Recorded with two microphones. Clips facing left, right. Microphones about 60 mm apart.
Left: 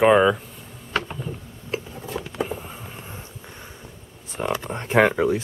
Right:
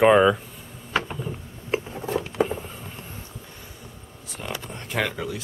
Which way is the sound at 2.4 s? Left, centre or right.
Centre.